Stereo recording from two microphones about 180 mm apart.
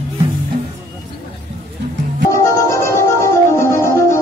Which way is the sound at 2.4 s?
15° left (ahead or behind).